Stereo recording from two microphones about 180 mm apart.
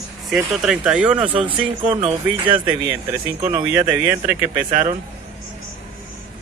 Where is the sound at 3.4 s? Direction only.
20° right (ahead or behind).